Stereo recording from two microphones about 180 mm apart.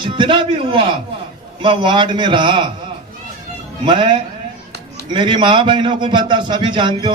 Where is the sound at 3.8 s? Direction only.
25° right (ahead or behind).